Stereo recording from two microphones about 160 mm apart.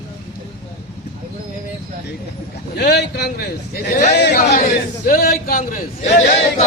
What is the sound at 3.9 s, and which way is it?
Speech, 50° left (ahead or behind).